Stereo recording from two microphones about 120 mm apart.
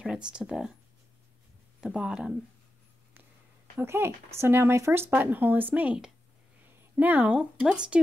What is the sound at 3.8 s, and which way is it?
Speech, 20° right (ahead or behind).